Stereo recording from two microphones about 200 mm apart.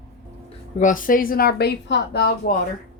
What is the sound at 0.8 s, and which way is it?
A woman's voice, 40° left (ahead or behind).